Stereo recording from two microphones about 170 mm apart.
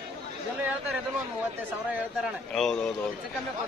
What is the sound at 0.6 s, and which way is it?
A man's voice, 10° right (ahead or behind).